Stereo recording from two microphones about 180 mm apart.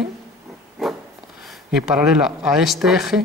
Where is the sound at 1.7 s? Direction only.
5° right (ahead or behind).